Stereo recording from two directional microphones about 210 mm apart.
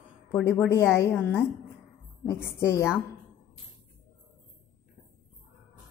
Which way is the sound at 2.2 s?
10° left (ahead or behind).